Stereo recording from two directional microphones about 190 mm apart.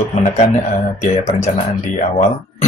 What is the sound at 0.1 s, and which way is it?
Speech, 35° left (ahead or behind).